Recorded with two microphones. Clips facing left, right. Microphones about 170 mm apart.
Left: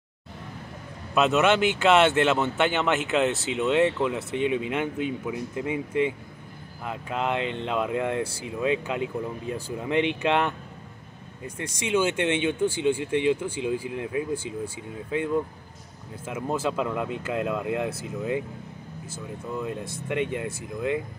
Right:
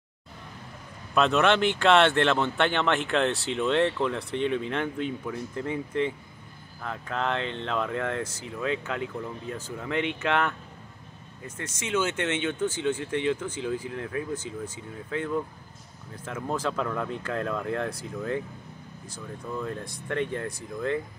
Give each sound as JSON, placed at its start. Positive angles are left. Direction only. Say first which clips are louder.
{"t": 1.1, "sound": "speech", "louder": "left 1 dB", "side_deg": 5}